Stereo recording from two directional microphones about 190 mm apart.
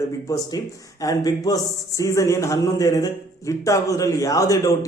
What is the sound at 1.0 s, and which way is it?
Speech, 20° left (ahead or behind).